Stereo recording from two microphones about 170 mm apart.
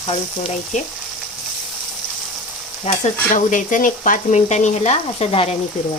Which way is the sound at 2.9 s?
40° left (ahead or behind).